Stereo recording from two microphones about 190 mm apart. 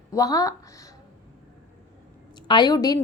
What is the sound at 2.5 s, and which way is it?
Speech, 20° left (ahead or behind).